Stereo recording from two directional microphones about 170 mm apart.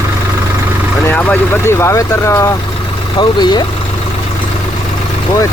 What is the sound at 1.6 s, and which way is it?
Speech, 15° left (ahead or behind).